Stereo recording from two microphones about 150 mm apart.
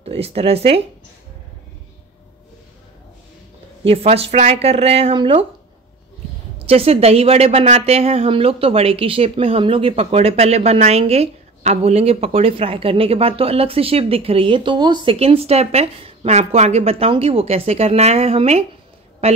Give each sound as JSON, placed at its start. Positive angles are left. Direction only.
{"t": 0.0, "sound": "a woman's voice", "side_deg": -45}
{"t": 3.8, "sound": "a woman's voice", "side_deg": -40}
{"t": 6.6, "sound": "a woman's voice", "side_deg": -40}
{"t": 15.1, "sound": "a woman's voice", "side_deg": -40}